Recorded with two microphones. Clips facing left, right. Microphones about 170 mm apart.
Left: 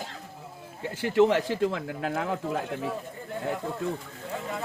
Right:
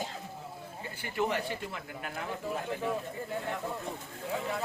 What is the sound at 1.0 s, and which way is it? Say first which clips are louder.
Speech: left 10 dB; 90° left.